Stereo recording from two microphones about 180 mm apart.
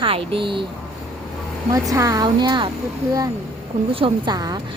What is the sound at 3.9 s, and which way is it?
Speech, 25° right (ahead or behind).